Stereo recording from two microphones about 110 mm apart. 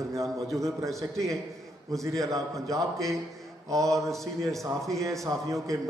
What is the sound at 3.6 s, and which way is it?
Mantra, 30° right (ahead or behind).